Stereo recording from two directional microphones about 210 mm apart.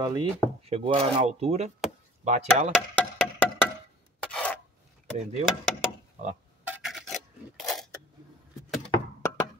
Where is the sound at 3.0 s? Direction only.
10° left (ahead or behind).